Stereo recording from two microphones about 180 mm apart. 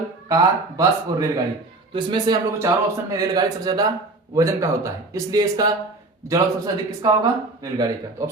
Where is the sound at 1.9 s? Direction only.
25° right (ahead or behind).